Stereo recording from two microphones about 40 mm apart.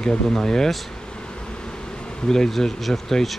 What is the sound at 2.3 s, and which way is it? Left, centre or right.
Bee, centre.